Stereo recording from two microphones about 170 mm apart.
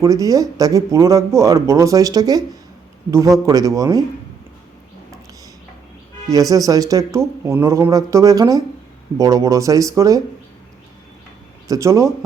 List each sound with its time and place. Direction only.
0.0 s speech: 20° right (ahead or behind)
6.2 s speech: 20° right (ahead or behind)
11.7 s speech: 20° right (ahead or behind)